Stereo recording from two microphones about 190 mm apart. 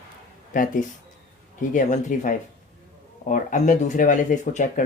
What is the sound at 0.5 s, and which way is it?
Speech, 40° left (ahead or behind).